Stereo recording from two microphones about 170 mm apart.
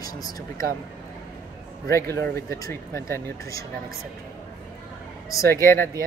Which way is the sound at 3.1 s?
20° left (ahead or behind).